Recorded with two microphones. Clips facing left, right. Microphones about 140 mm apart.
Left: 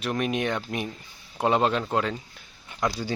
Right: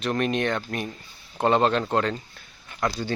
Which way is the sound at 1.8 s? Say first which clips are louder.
Right 2 dB; centre (ahead or behind).